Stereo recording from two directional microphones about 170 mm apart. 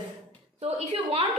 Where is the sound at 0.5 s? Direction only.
40° right (ahead or behind).